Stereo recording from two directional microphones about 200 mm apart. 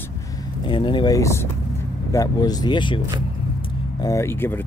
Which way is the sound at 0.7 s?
25° left (ahead or behind).